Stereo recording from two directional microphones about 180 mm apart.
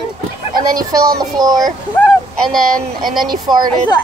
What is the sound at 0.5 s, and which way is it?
Speech, 50° right (ahead or behind).